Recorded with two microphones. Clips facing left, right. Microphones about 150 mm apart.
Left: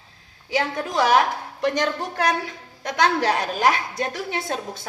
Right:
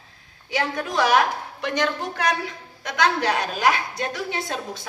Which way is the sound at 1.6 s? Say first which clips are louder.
Left 2 dB; 40° left (ahead or behind).